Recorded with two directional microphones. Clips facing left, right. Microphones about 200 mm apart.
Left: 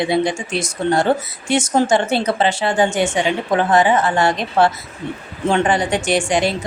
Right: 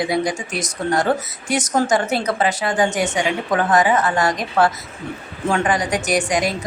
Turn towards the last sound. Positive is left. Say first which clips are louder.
# left 2 dB
turn(degrees=30)  # may be behind; listen again after turning